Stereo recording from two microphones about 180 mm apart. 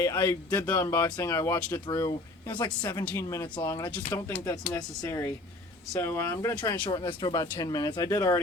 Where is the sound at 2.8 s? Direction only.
10° left (ahead or behind).